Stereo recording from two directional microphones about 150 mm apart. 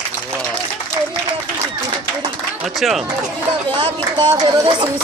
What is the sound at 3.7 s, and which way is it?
Speech, 30° right (ahead or behind).